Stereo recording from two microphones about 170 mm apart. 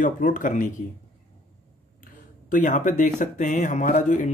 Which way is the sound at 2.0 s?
50° left (ahead or behind).